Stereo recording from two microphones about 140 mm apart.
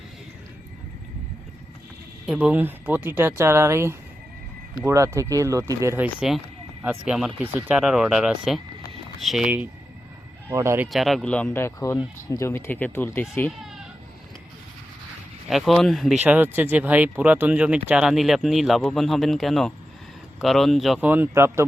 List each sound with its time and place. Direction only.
2.2 s speech: centre (ahead or behind)
2.5 s speech: 15° right (ahead or behind)
6.1 s speech: 5° right (ahead or behind)
10.5 s speech: 20° right (ahead or behind)
10.9 s speech: centre (ahead or behind)
15.4 s speech: centre (ahead or behind)
16.2 s speech: 15° right (ahead or behind)
21.1 s speech: 15° right (ahead or behind)